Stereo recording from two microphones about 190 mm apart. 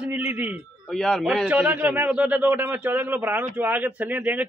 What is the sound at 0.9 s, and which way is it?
A man's voice, centre (ahead or behind).